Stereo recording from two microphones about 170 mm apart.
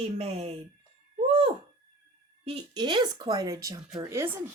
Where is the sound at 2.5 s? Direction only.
25° right (ahead or behind).